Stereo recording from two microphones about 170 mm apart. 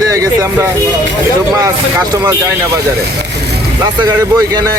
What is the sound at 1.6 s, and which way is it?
Speech, 20° right (ahead or behind).